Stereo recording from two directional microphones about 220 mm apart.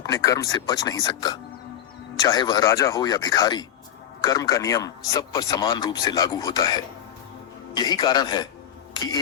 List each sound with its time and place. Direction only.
0.0 s a man's voice: 15° left (ahead or behind)